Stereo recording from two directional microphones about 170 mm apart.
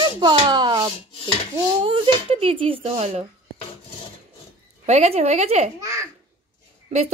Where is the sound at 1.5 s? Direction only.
30° right (ahead or behind).